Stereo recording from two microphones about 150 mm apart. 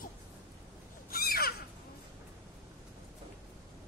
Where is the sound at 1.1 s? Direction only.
85° left.